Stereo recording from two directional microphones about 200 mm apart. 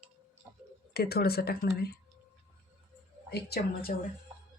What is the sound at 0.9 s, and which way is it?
Speech, 50° left (ahead or behind).